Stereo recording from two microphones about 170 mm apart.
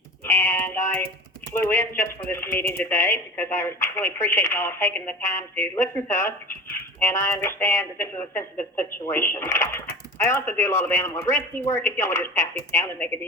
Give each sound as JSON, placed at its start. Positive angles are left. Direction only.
{"t": 0.3, "sound": "music", "side_deg": 15}
{"t": 1.5, "sound": "speech", "side_deg": 15}